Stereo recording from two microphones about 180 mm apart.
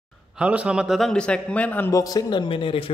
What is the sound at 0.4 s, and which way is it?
A man's voice, 5° right (ahead or behind).